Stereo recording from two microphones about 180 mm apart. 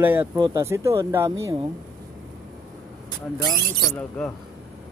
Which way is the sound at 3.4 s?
20° left (ahead or behind).